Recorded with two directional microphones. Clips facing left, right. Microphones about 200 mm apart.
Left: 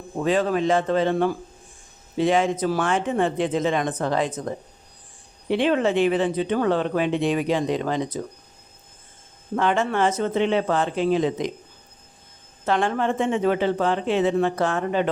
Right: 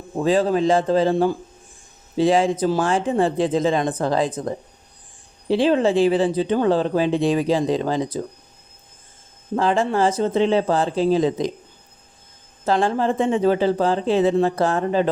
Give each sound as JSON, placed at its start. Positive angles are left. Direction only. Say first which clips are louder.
{"t": 0.2, "sound": "speech", "louder": "right 3 dB", "side_deg": -30}
{"t": 9.6, "sound": "speech", "louder": "right 2 dB", "side_deg": -30}
{"t": 12.6, "sound": "speech", "louder": "right 3 dB", "side_deg": -35}